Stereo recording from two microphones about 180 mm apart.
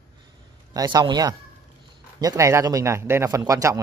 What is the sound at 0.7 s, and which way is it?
A man's voice, 20° right (ahead or behind).